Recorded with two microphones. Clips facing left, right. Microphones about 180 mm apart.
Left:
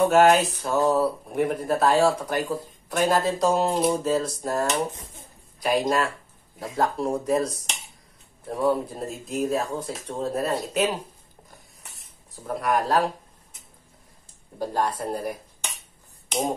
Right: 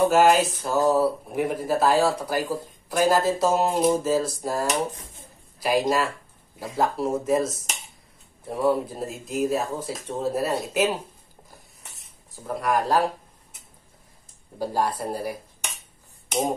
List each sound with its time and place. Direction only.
0.0 s speech: centre (ahead or behind)
12.3 s speech: centre (ahead or behind)
14.6 s speech: 5° right (ahead or behind)